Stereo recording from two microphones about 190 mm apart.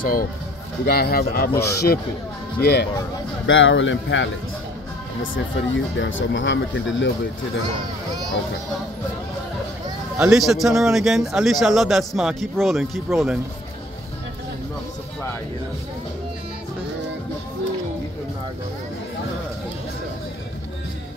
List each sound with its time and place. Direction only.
0.0 s speech: 50° left (ahead or behind)
3.4 s speech: 90° left
5.9 s speech: 85° left
10.1 s speech: 5° right (ahead or behind)